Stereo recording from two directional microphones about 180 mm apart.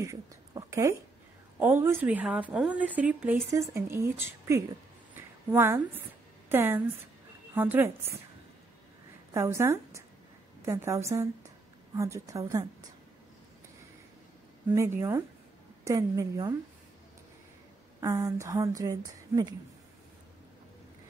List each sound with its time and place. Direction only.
0.0 s a sound: 15° right (ahead or behind)
1.6 s a woman's voice: 10° right (ahead or behind)
5.1 s a sound: 10° right (ahead or behind)
6.5 s a woman's voice: 10° right (ahead or behind)
9.3 s a woman's voice: 15° right (ahead or behind)
14.7 s a woman's voice: 15° right (ahead or behind)
18.0 s speech: 20° right (ahead or behind)